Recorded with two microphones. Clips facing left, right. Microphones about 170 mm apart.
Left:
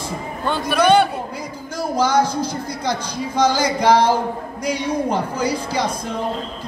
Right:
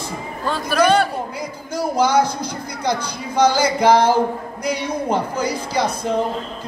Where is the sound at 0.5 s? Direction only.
Centre (ahead or behind).